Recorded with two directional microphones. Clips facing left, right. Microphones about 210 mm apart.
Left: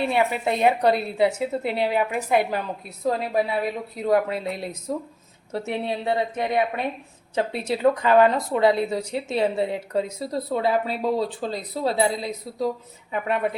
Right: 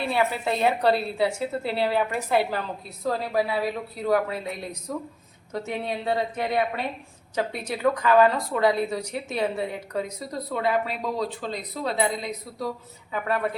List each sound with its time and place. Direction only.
0.0 s a woman's voice: 20° left (ahead or behind)